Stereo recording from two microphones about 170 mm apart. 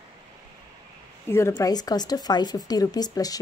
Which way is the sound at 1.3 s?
15° left (ahead or behind).